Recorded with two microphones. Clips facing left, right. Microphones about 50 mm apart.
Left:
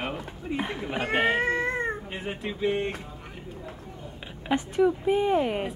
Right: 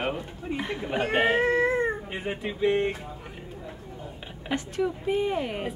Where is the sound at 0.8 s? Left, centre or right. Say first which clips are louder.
Right 2 dB; centre.